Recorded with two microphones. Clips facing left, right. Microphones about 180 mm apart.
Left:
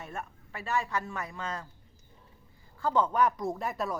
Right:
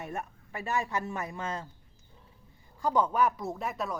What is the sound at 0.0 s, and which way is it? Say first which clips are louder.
A man's voice: right 3 dB; 20° right (ahead or behind).